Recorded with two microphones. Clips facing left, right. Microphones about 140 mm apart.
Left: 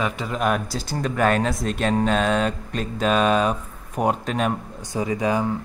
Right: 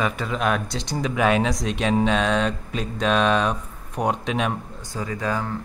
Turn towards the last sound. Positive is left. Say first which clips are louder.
# left 4 dB
turn(degrees=15)  # may be behind; listen again after turning